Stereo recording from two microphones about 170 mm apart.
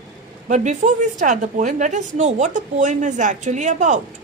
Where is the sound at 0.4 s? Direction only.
45° right (ahead or behind).